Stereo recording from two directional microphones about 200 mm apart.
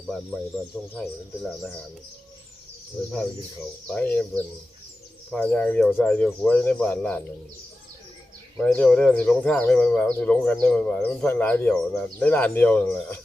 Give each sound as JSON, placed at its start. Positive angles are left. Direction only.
{"t": 0.1, "sound": "speech", "side_deg": 5}
{"t": 3.8, "sound": "speech", "side_deg": 5}
{"t": 8.5, "sound": "speech", "side_deg": 5}